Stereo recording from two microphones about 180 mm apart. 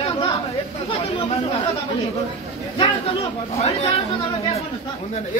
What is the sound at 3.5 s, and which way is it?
Speech, 35° left (ahead or behind).